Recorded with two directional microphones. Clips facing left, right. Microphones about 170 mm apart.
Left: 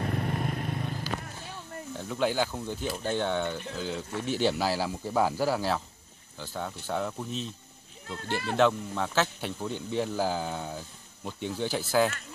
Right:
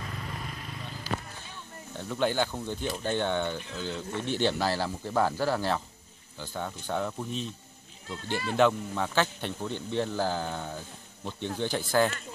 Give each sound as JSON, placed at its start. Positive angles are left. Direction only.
{"t": 0.0, "sound": "vehicle", "side_deg": 55}
{"t": 2.0, "sound": "speech", "side_deg": 5}
{"t": 8.5, "sound": "speech", "side_deg": 0}